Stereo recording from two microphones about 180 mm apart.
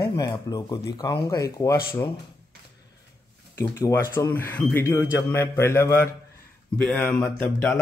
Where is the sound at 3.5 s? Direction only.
15° left (ahead or behind).